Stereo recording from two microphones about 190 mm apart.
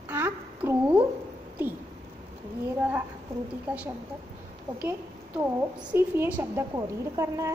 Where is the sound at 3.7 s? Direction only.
10° right (ahead or behind).